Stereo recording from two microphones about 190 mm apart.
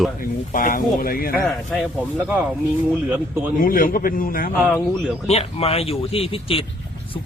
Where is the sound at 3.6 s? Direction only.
50° left (ahead or behind).